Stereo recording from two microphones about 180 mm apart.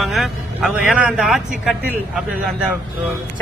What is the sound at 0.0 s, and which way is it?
A man's voice, centre (ahead or behind).